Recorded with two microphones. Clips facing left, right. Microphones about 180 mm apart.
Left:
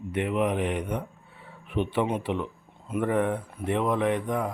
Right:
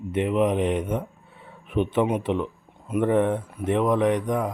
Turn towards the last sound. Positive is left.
turn(degrees=-20)  # may be behind; listen again after turning